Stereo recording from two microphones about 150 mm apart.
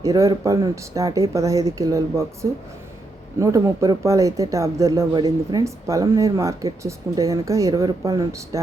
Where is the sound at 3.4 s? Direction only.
20° right (ahead or behind).